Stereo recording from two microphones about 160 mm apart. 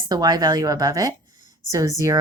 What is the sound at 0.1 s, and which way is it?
A woman's voice, 25° right (ahead or behind).